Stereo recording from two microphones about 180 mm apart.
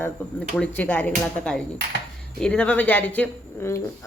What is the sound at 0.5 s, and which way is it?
Speech, 5° left (ahead or behind).